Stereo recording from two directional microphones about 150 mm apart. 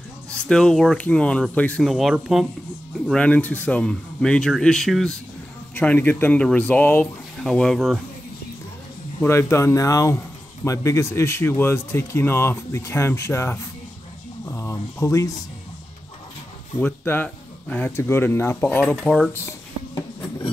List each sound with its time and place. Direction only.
0.3 s speech: 5° left (ahead or behind)
1.9 s speech: centre (ahead or behind)
3.1 s speech: 10° left (ahead or behind)
9.2 s speech: 15° left (ahead or behind)
16.8 s speech: 15° left (ahead or behind)
19.3 s a sound: 20° left (ahead or behind)